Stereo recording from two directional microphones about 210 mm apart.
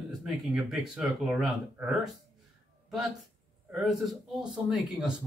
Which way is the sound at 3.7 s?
Centre (ahead or behind).